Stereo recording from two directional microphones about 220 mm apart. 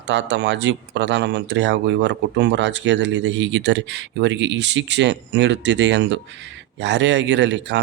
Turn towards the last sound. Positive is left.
turn(degrees=-55)  # may be behind; listen again after turning